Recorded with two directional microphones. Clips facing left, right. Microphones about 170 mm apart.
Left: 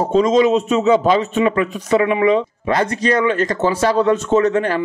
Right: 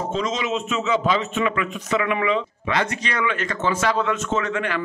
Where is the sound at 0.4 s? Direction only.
35° left (ahead or behind).